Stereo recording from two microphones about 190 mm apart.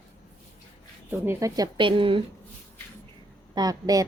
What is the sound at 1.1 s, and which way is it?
Speech, 15° right (ahead or behind).